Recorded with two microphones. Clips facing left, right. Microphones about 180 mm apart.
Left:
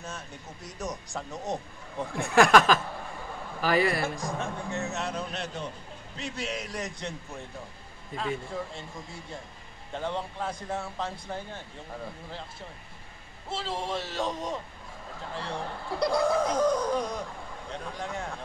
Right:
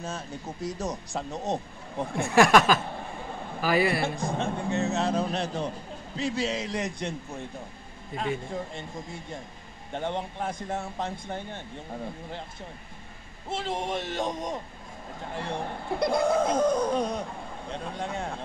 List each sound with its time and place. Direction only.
0.7 s speech: 25° right (ahead or behind)
2.3 s speech: centre (ahead or behind)
4.0 s speech: 30° right (ahead or behind)
8.2 s speech: 20° right (ahead or behind)
9.9 s speech: 20° right (ahead or behind)
13.5 s speech: 20° right (ahead or behind)